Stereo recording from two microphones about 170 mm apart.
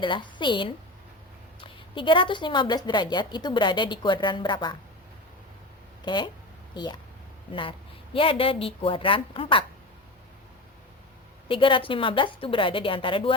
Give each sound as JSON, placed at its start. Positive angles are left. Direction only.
{"t": 0.0, "sound": "a woman's voice", "side_deg": 30}
{"t": 2.0, "sound": "a woman's voice", "side_deg": 30}
{"t": 6.1, "sound": "a woman's voice", "side_deg": 25}
{"t": 11.4, "sound": "a woman's voice", "side_deg": 30}